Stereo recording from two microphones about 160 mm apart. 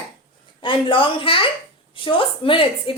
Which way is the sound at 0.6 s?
30° left (ahead or behind).